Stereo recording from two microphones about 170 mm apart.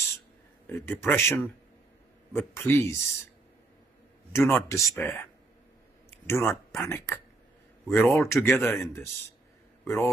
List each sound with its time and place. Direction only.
0.7 s speech: 15° left (ahead or behind)
4.5 s speech: 15° left (ahead or behind)
6.0 s clicking: 15° left (ahead or behind)
6.8 s speech: 15° left (ahead or behind)